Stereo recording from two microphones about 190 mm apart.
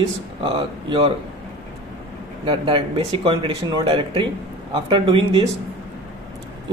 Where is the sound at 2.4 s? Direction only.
25° right (ahead or behind).